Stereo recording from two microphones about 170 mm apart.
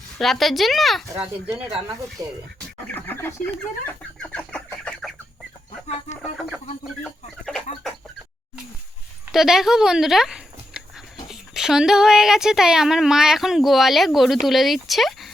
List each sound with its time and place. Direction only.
0.2 s speech: centre (ahead or behind)
2.2 s speech: 20° right (ahead or behind)
2.8 s chicken: 10° left (ahead or behind)
6.3 s speech: centre (ahead or behind)
9.3 s speech: centre (ahead or behind)